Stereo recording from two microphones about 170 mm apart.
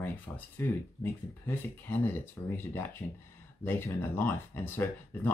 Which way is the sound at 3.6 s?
15° left (ahead or behind).